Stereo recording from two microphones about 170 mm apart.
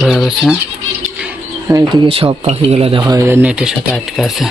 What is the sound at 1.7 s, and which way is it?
Speech, 20° right (ahead or behind).